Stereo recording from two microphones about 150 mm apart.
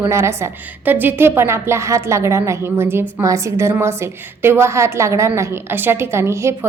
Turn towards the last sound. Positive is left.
turn(degrees=-20)  # may be behind; listen again after turning